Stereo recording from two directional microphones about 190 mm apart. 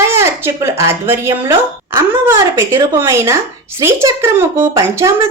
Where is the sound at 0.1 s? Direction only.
10° right (ahead or behind).